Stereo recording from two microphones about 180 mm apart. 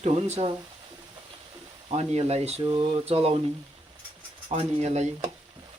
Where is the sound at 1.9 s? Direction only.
35° right (ahead or behind).